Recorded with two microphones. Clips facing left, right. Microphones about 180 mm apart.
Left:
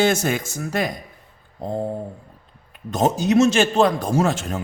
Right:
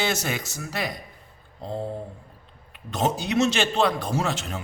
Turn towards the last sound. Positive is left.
turn(degrees=45)  # may be behind; listen again after turning